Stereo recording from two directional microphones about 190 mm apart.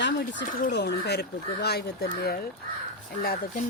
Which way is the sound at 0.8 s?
60° left (ahead or behind).